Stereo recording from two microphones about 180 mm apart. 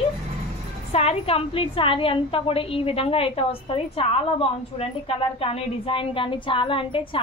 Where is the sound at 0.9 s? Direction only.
35° left (ahead or behind).